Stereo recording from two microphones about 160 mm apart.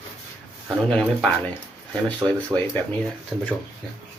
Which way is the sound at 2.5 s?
10° right (ahead or behind).